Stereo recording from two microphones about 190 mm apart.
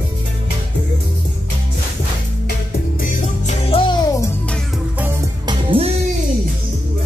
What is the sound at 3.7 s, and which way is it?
Music, 20° left (ahead or behind).